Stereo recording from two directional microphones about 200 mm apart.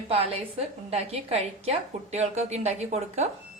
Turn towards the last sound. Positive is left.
turn(degrees=-35)  # may be behind; listen again after turning